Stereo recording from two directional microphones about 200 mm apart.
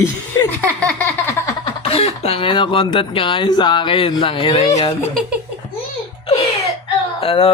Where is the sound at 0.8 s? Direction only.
10° left (ahead or behind).